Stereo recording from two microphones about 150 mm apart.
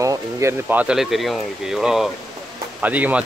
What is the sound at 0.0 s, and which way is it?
Speech, 20° right (ahead or behind).